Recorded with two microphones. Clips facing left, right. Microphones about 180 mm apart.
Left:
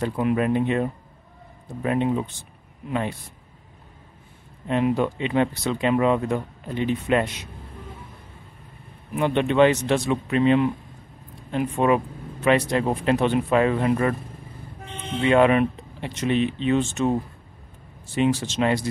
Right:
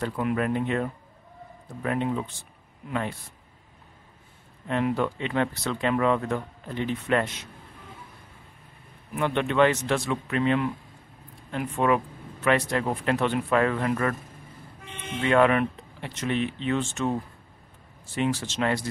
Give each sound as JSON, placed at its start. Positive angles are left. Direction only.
{"t": 0.0, "sound": "speech", "side_deg": 20}
{"t": 4.6, "sound": "speech", "side_deg": 20}
{"t": 9.1, "sound": "speech", "side_deg": 20}